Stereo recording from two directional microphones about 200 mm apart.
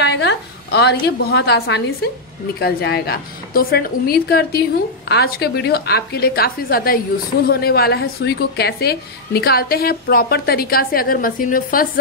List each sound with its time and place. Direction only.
0.0 s a woman's voice: 60° left (ahead or behind)